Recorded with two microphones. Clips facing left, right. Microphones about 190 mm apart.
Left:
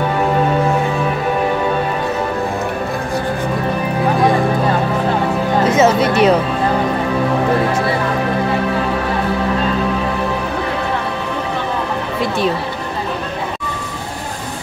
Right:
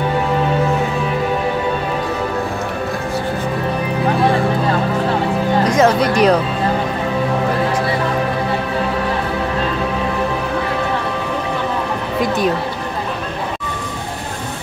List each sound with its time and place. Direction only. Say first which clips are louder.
5.6 s music: left 1 dB; 5° left (ahead or behind)